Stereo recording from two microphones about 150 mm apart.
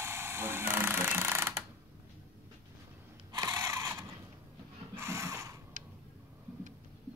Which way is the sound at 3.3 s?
25° right (ahead or behind).